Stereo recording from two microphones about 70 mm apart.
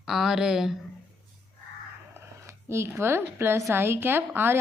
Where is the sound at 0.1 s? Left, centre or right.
Centre.